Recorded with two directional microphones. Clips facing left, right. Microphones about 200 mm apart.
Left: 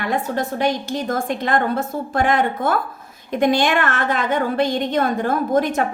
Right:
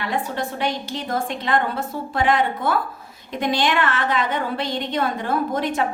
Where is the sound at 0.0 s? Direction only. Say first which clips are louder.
Left 3 dB; 45° left (ahead or behind).